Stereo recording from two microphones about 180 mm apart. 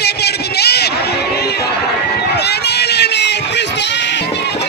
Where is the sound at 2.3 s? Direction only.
65° left (ahead or behind).